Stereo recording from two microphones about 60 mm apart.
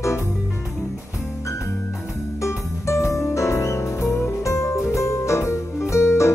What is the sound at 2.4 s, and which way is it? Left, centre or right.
Music, left.